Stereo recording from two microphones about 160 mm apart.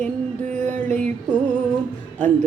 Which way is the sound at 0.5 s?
50° right (ahead or behind).